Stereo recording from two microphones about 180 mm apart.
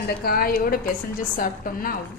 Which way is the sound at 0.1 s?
55° left (ahead or behind).